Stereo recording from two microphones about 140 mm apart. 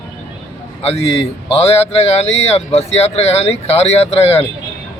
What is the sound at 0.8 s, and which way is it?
Speech, 45° left (ahead or behind).